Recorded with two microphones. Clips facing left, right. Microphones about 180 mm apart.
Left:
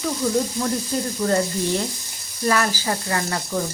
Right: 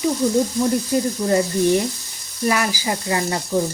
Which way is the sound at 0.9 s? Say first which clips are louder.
Right 6 dB; 10° right (ahead or behind).